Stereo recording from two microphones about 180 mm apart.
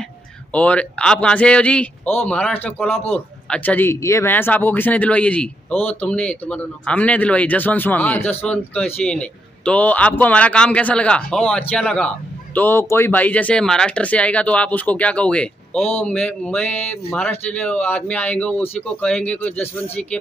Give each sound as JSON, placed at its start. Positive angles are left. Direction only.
{"t": 0.5, "sound": "speech", "side_deg": 5}